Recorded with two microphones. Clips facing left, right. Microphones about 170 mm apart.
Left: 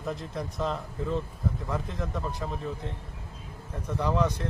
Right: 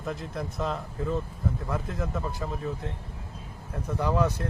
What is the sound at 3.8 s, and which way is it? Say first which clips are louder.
Speech: right 1 dB; 10° right (ahead or behind).